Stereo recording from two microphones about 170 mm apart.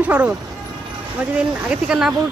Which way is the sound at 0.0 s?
10° right (ahead or behind).